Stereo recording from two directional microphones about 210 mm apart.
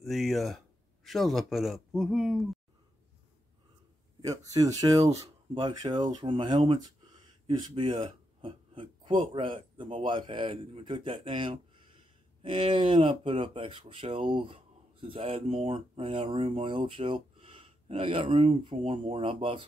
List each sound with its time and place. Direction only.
0.0 s speech: centre (ahead or behind)
4.7 s speech: 15° right (ahead or behind)